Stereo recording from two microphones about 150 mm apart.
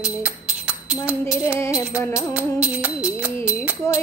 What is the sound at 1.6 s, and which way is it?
Music, 20° left (ahead or behind).